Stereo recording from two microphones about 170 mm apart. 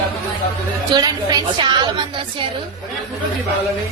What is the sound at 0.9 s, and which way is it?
Speech, 20° right (ahead or behind).